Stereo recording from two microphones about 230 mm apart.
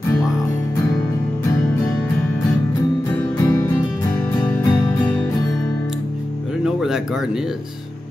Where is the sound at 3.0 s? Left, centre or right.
Centre.